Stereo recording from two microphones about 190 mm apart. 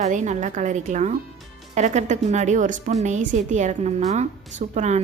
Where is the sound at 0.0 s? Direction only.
40° right (ahead or behind).